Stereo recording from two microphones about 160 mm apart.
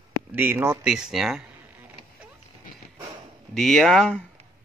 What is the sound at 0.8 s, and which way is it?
Speech, 5° right (ahead or behind).